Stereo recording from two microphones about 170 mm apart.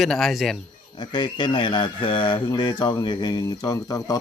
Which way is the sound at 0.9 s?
25° left (ahead or behind).